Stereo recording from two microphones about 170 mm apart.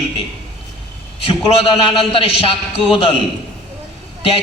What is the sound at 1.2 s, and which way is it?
A man's voice, 30° left (ahead or behind).